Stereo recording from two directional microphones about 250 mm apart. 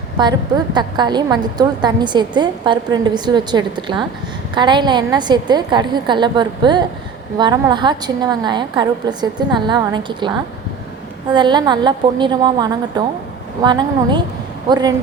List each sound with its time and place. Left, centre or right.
0.2 s a woman's voice: centre
11.3 s a woman's voice: centre